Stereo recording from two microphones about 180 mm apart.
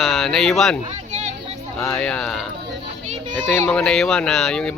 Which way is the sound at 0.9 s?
40° right (ahead or behind).